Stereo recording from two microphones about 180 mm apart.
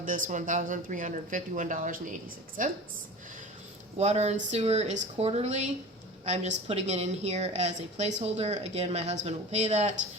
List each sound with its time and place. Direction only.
0.0 s speech: 45° right (ahead or behind)
3.9 s speech: 35° right (ahead or behind)